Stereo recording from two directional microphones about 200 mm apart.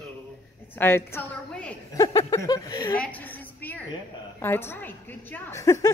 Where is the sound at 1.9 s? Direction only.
15° left (ahead or behind).